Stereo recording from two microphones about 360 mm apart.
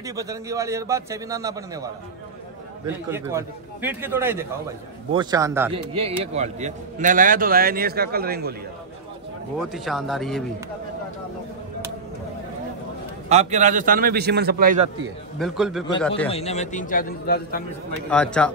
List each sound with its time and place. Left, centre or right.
0.0 s a man's voice: centre
3.1 s a man's voice: centre; by 8.5 s right
9.6 s speech: centre
13.3 s a man's voice: centre
15.3 s speech: centre
16.3 s a man's voice: centre
18.1 s speech: centre